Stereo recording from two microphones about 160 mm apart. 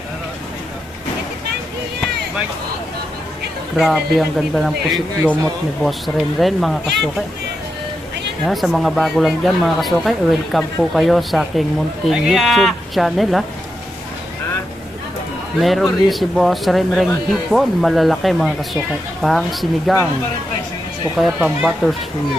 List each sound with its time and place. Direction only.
3.8 s speech: centre (ahead or behind)
6.4 s speech: centre (ahead or behind)
8.4 s speech: centre (ahead or behind)
15.6 s speech: centre (ahead or behind)
21.2 s speech: 5° right (ahead or behind)